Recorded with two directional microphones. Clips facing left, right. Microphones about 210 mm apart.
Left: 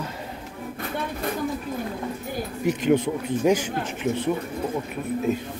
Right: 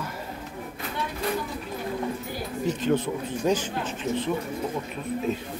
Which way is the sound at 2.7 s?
15° left (ahead or behind).